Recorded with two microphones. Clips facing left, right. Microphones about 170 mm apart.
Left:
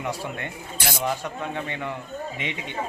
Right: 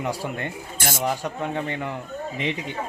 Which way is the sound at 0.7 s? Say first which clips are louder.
Even; 50° right (ahead or behind).